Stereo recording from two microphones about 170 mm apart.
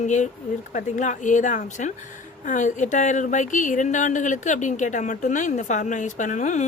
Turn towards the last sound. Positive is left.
turn(degrees=45)  # may be behind; listen again after turning